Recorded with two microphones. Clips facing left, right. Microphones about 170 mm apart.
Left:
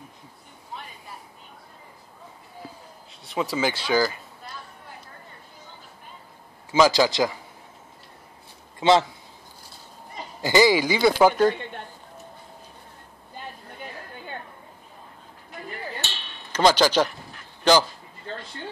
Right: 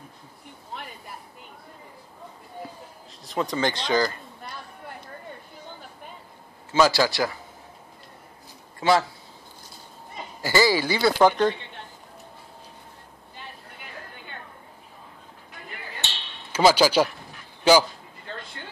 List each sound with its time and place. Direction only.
3.3 s speech: 5° left (ahead or behind)
6.7 s speech: 15° left (ahead or behind)
8.7 s speech: 20° left (ahead or behind)
10.4 s speech: 20° left (ahead or behind)
16.5 s speech: 10° right (ahead or behind)